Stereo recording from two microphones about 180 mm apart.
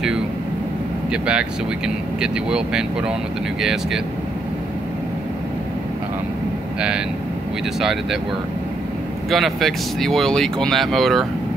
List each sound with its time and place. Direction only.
1.1 s speech: 5° right (ahead or behind)
7.8 s speech: centre (ahead or behind)
9.3 s speech: centre (ahead or behind)